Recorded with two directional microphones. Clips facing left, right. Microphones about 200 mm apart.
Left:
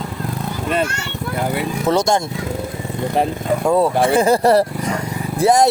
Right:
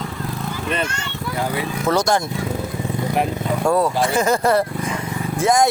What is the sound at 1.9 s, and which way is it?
Speech, 25° left (ahead or behind).